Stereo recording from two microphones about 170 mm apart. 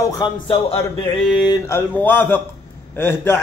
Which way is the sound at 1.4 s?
20° left (ahead or behind).